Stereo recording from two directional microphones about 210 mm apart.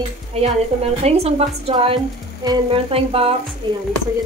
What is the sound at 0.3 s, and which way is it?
A woman's voice, 30° right (ahead or behind).